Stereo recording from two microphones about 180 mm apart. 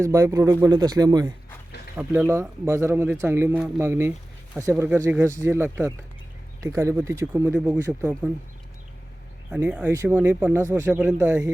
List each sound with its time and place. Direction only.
0.0 s speech: 15° right (ahead or behind)
9.5 s speech: 5° right (ahead or behind)